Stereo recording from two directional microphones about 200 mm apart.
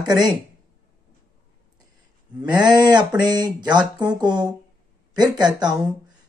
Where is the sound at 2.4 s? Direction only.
20° right (ahead or behind).